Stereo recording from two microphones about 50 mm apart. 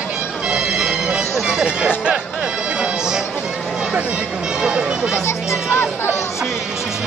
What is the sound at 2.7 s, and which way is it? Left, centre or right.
Music, centre.